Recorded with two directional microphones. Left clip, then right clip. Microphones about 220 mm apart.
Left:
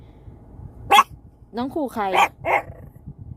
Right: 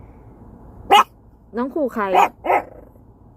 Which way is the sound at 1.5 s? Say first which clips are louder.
Right 4 dB; 15° left (ahead or behind).